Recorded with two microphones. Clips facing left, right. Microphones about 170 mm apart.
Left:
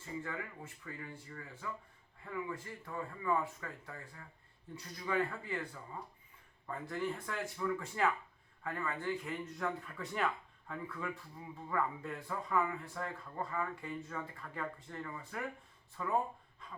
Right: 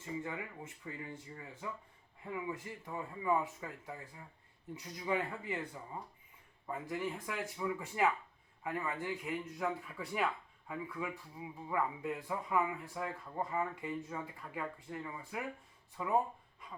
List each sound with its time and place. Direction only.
0.2 s speech: 20° right (ahead or behind)